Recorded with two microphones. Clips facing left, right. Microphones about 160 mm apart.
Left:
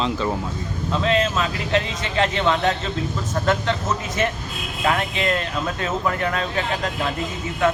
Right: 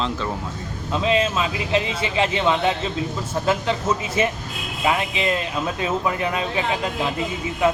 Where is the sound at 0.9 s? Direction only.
10° right (ahead or behind).